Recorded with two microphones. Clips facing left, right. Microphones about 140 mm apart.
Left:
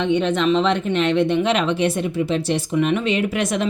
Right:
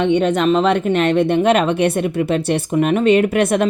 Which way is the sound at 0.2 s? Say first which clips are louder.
Right 3 dB; 45° right (ahead or behind).